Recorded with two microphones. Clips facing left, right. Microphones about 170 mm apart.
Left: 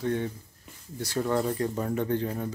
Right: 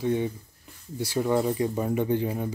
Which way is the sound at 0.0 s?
10° right (ahead or behind).